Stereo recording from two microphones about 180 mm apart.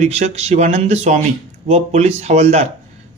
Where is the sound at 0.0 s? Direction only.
40° right (ahead or behind).